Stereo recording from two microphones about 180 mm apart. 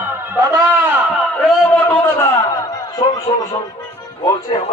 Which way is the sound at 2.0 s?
15° left (ahead or behind).